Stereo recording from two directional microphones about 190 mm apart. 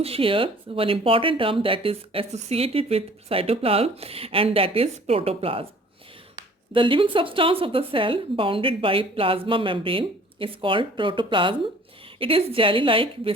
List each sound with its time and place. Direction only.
0.0 s speech: 30° right (ahead or behind)
6.7 s speech: 25° right (ahead or behind)